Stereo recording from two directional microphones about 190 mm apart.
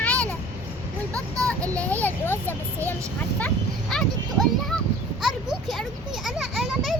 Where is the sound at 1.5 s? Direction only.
5° left (ahead or behind).